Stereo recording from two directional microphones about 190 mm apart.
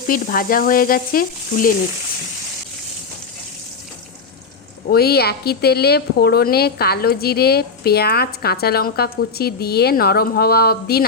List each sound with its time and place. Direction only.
0.1 s sizzle: 50° left (ahead or behind)
4.9 s a woman's voice: 55° left (ahead or behind)